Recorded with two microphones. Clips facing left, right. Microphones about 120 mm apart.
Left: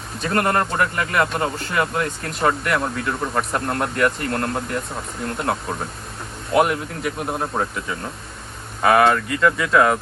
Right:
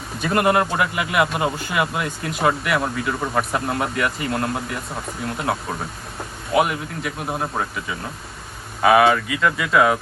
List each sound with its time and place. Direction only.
0.2 s speech: 5° right (ahead or behind)